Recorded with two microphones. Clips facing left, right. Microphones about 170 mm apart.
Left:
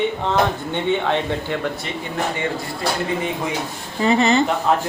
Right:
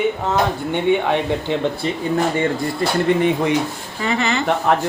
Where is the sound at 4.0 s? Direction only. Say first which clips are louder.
Left 4 dB; 30° left (ahead or behind).